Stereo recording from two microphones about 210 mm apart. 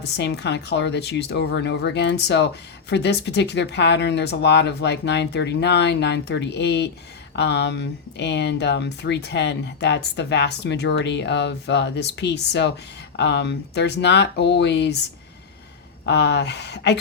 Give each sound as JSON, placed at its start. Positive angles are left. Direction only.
{"t": 0.2, "sound": "speech", "side_deg": 55}
{"t": 16.0, "sound": "speech", "side_deg": 55}